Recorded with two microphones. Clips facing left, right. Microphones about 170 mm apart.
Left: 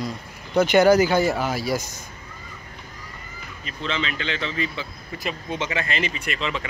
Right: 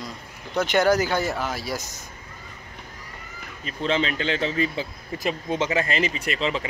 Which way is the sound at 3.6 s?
40° right (ahead or behind).